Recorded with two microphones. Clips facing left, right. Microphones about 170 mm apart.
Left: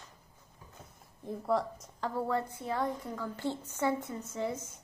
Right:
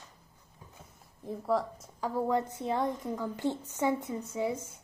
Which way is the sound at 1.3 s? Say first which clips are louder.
Right 1 dB; centre (ahead or behind).